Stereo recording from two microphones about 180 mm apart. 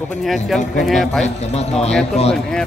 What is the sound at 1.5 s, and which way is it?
Speech, 35° left (ahead or behind).